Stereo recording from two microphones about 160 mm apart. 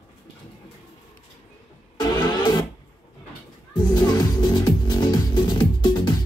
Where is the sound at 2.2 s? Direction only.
25° left (ahead or behind).